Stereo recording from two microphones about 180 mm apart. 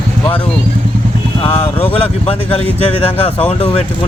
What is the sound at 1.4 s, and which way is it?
Speech, 30° left (ahead or behind).